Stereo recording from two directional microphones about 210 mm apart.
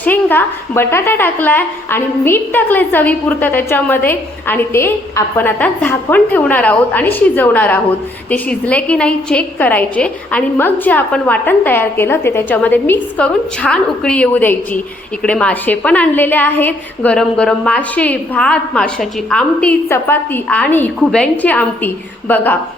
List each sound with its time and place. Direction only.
0.0 s a woman's voice: 10° left (ahead or behind)